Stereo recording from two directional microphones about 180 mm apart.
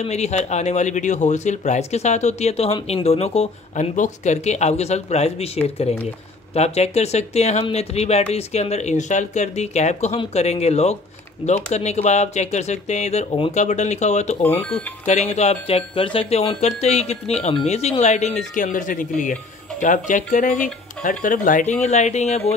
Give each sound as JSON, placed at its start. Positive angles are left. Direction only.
{"t": 0.0, "sound": "speech", "side_deg": 40}